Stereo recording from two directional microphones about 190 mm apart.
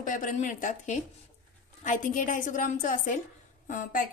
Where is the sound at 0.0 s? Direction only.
45° left (ahead or behind).